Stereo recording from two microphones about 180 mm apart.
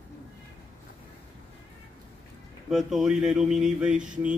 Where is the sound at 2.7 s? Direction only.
Centre (ahead or behind).